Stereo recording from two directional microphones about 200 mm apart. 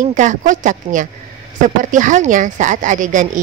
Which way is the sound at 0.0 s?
40° right (ahead or behind).